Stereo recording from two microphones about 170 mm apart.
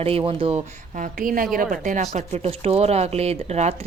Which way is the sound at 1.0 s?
55° right (ahead or behind).